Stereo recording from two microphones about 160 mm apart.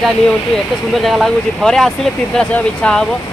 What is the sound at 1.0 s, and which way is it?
Speech, centre (ahead or behind).